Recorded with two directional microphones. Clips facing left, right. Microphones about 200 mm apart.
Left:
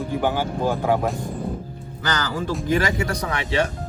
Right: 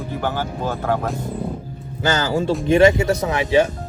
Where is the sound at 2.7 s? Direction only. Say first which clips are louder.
Right 9 dB; 25° right (ahead or behind).